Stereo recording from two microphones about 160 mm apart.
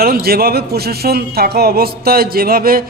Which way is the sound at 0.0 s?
70° right (ahead or behind).